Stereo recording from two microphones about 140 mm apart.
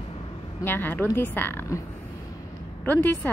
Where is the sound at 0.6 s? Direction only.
15° left (ahead or behind).